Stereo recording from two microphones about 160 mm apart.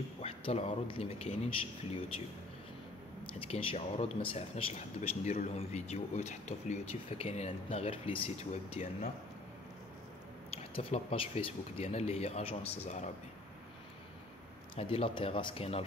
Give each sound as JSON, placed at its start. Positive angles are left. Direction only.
{"t": 0.2, "sound": "a man's voice", "side_deg": 40}
{"t": 3.3, "sound": "speech", "side_deg": 40}
{"t": 10.5, "sound": "speech", "side_deg": 35}
{"t": 14.8, "sound": "speech", "side_deg": 35}